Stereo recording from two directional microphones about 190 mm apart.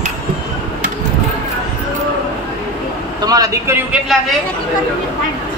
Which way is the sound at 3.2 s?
20° right (ahead or behind).